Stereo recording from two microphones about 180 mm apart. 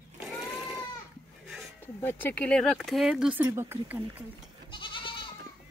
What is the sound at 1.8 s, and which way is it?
Speech, 10° left (ahead or behind).